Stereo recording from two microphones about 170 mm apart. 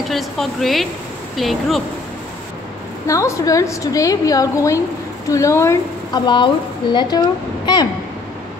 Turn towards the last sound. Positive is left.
turn(degrees=25)  # may be behind; listen again after turning